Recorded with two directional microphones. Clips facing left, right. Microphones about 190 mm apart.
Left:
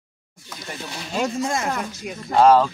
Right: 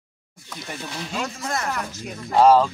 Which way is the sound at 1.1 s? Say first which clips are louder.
Left 8 dB; 30° left (ahead or behind).